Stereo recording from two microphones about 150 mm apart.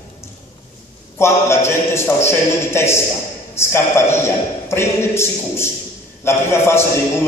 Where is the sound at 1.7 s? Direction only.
15° left (ahead or behind).